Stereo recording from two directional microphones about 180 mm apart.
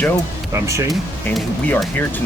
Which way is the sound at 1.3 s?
Centre (ahead or behind).